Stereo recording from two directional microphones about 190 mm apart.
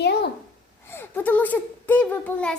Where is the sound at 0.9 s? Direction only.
10° left (ahead or behind).